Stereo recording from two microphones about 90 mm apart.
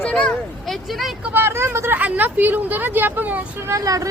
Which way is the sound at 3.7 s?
40° right (ahead or behind).